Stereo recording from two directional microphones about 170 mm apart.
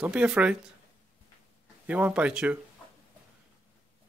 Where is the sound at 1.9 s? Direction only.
10° right (ahead or behind).